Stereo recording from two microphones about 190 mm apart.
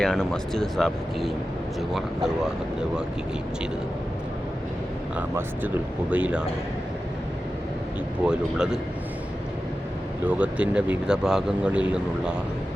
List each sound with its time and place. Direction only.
0.0 s speech: 5° left (ahead or behind)
5.1 s speech: 10° right (ahead or behind)
8.3 s speech: 5° right (ahead or behind)
10.2 s speech: 5° right (ahead or behind)